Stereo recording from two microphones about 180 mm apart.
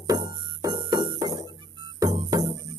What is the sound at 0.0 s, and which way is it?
Music, 20° right (ahead or behind).